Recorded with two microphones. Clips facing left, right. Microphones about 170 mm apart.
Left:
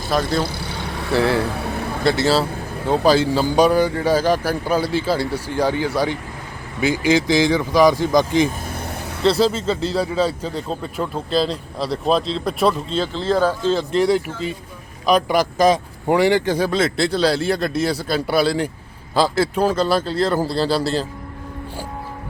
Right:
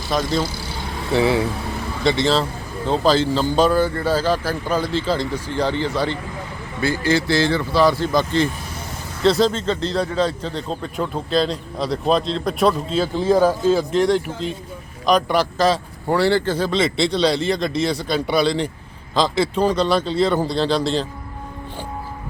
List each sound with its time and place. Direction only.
0.1 s a man's voice: 5° left (ahead or behind)
1.5 s vehicle: 65° left (ahead or behind)
2.0 s speech: 5° left (ahead or behind)
9.2 s a man's voice: centre (ahead or behind)
13.1 s speech: 15° right (ahead or behind)
15.0 s a man's voice: 5° left (ahead or behind)